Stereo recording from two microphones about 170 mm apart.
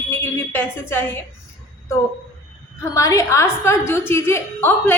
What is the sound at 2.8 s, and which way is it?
A woman's voice, 20° left (ahead or behind).